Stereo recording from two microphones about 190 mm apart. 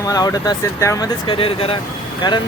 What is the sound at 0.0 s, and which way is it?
Speech, 20° left (ahead or behind).